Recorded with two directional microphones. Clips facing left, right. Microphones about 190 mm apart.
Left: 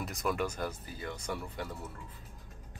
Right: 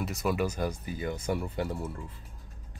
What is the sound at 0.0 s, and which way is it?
Speech, 5° right (ahead or behind).